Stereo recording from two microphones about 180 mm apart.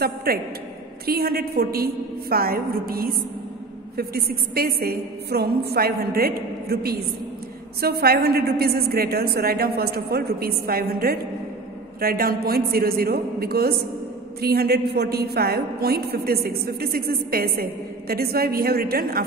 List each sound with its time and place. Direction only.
0.0 s a woman's voice: 60° right (ahead or behind)